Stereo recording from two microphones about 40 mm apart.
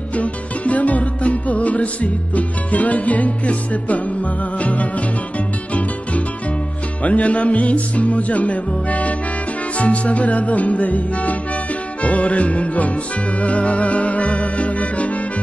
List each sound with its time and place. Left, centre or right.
0.1 s music: left
7.0 s music: left